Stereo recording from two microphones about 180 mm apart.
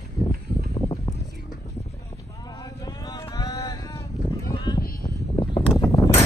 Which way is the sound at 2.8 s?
25° left (ahead or behind).